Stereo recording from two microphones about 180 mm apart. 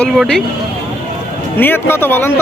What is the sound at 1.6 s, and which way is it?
Speech, 10° left (ahead or behind).